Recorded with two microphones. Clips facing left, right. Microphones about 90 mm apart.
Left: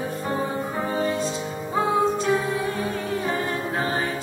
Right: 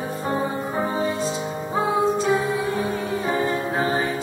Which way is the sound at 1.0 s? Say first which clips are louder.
Right 1 dB; 5° right (ahead or behind).